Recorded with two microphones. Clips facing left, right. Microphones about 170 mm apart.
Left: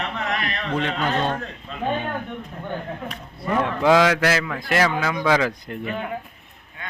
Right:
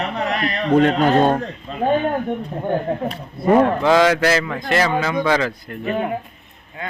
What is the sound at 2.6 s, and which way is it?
Speech, 40° right (ahead or behind).